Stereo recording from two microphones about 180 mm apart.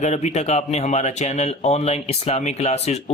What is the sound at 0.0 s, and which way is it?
Speech, 40° left (ahead or behind).